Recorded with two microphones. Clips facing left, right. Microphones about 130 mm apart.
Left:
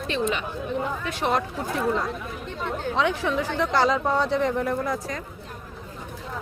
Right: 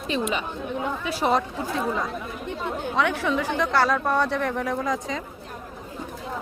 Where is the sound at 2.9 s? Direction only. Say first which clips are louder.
Right 1 dB; 15° left (ahead or behind).